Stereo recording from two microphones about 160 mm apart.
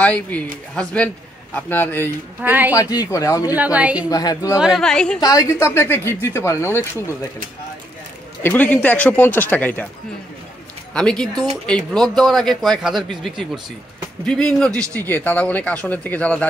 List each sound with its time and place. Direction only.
0.0 s a man's voice: 10° left (ahead or behind)
2.4 s a woman's voice: 10° right (ahead or behind)
2.7 s speech: 20° left (ahead or behind)
3.5 s a woman's voice: 10° right (ahead or behind)
4.1 s speech: 25° left (ahead or behind)
4.6 s a man's voice: centre (ahead or behind)
5.2 s a man's voice: 20° left (ahead or behind)
8.4 s a man's voice: 10° left (ahead or behind)
10.9 s a man's voice: 5° left (ahead or behind)
14.2 s a man's voice: 5° left (ahead or behind)